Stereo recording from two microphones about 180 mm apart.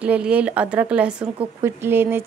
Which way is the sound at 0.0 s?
5° right (ahead or behind).